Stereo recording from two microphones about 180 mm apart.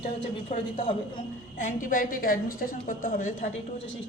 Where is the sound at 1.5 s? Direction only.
45° left (ahead or behind).